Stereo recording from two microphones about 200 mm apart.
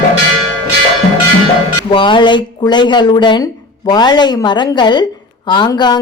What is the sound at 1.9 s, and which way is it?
A woman's voice, 25° left (ahead or behind).